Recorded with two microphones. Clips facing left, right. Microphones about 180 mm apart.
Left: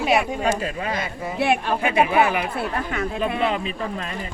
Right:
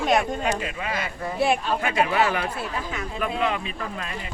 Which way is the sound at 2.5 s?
60° left (ahead or behind).